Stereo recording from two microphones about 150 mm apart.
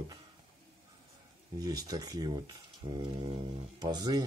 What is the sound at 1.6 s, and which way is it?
Speech, 25° right (ahead or behind).